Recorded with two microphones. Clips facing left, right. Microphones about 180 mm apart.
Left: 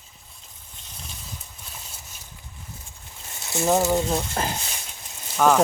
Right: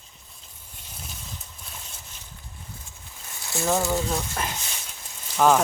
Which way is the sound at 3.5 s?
20° left (ahead or behind).